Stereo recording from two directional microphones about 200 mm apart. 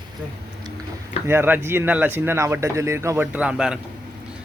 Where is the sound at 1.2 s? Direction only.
10° right (ahead or behind).